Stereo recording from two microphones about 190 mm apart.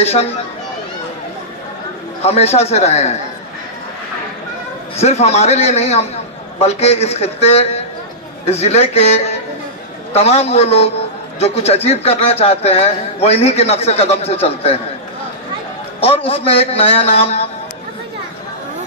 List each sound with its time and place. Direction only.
0.0 s speech: 35° left (ahead or behind)
2.2 s speech: 35° left (ahead or behind)
4.9 s speech: 35° left (ahead or behind)
16.0 s speech: 30° left (ahead or behind)